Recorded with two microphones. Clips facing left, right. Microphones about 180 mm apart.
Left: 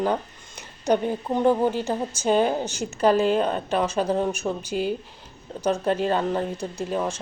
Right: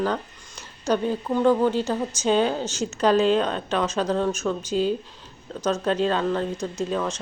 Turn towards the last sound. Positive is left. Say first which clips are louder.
# right 1 dB
turn(degrees=10)  # may be behind; listen again after turning